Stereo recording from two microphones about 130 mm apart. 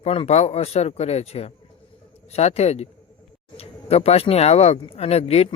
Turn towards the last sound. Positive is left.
turn(degrees=50)  # may be behind; listen again after turning